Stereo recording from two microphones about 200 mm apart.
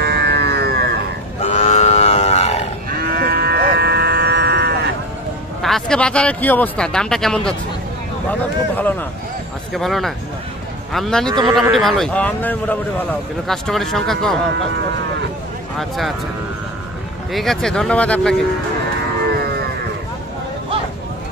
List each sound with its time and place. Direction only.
0.0 s livestock: 55° right (ahead or behind)
1.4 s livestock: 35° left (ahead or behind)
2.9 s livestock: 50° right (ahead or behind)
5.6 s speech: centre (ahead or behind)
17.3 s speech: centre (ahead or behind)
19.3 s moo: 50° right (ahead or behind)